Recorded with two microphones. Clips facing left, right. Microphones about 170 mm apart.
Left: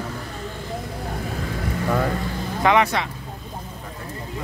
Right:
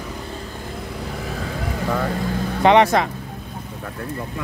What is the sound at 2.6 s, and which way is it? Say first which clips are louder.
Speech: right 5 dB; 35° right (ahead or behind).